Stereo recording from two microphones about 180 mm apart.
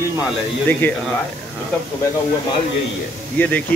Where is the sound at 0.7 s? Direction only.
10° left (ahead or behind).